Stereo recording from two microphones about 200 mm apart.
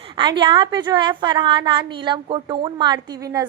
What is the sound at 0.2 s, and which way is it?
A woman's voice, 25° right (ahead or behind).